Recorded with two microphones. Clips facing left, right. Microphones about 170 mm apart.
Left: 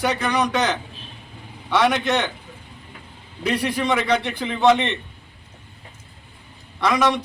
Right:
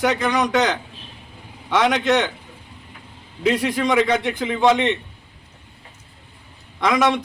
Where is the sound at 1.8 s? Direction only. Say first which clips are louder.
Right 2 dB; 20° right (ahead or behind).